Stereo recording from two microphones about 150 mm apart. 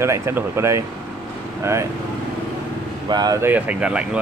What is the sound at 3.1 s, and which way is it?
Speech, 25° right (ahead or behind).